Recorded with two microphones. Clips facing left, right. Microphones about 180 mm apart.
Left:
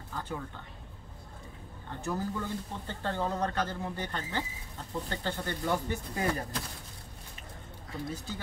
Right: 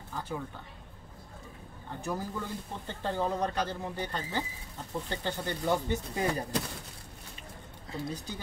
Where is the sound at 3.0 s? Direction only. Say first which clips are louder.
Right 1 dB; 15° right (ahead or behind).